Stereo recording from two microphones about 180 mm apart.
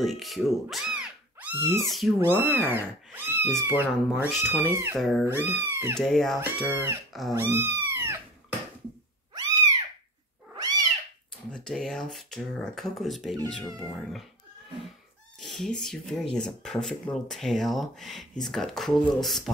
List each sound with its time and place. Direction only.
0.0 s speech: centre (ahead or behind)
2.1 s speech: 10° right (ahead or behind)
4.9 s speech: centre (ahead or behind)
5.2 s speech: 10° right (ahead or behind)
5.9 s speech: centre (ahead or behind)
6.6 s speech: 10° right (ahead or behind)
7.3 s cat: 10° right (ahead or behind)
9.3 s cat: 20° right (ahead or behind)
11.5 s speech: 5° left (ahead or behind)
15.4 s speech: 5° left (ahead or behind)